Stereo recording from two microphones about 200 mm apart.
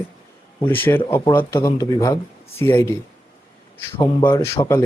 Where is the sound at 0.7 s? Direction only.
10° left (ahead or behind).